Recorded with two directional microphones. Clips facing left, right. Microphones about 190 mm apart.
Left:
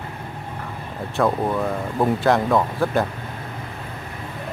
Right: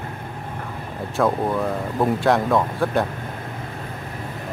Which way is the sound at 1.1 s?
Centre (ahead or behind).